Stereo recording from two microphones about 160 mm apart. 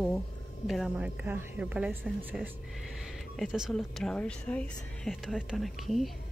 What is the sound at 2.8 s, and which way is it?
Speech, centre (ahead or behind).